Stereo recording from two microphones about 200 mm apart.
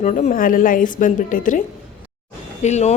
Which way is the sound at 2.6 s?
35° left (ahead or behind).